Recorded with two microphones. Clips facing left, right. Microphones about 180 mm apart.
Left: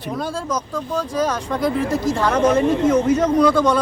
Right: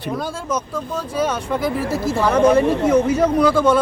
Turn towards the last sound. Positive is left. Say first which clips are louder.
# even
turn(degrees=-5)  # may be behind; listen again after turning